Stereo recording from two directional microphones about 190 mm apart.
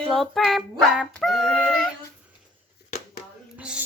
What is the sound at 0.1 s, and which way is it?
Female singing, centre (ahead or behind).